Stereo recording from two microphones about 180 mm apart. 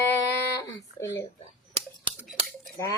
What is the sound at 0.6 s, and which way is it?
Speech, 20° left (ahead or behind).